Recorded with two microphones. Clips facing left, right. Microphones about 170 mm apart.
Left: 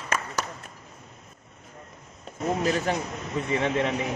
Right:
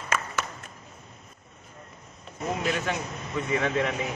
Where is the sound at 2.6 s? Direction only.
35° left (ahead or behind).